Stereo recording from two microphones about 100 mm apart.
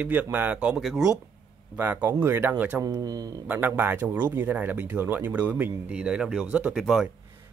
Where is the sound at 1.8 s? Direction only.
20° right (ahead or behind).